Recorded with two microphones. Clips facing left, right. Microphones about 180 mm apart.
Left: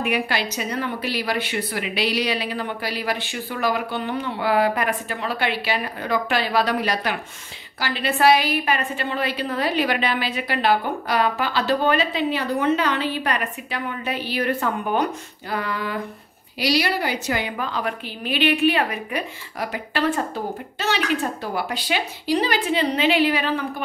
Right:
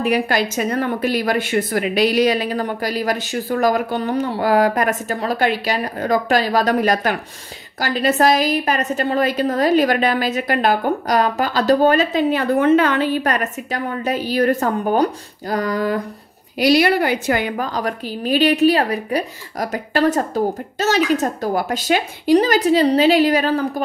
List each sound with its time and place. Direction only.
0.0 s a woman's voice: 40° right (ahead or behind)
16.5 s a woman's voice: 50° right (ahead or behind)